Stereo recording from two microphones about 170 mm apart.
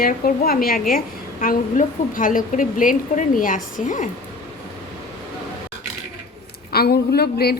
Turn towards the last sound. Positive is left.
turn(degrees=70)  # may be behind; listen again after turning